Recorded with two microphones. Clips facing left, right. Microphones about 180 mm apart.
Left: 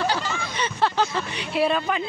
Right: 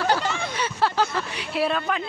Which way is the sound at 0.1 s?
60° right (ahead or behind).